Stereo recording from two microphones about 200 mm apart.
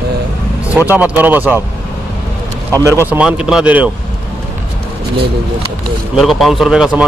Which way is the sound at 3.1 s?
5° right (ahead or behind).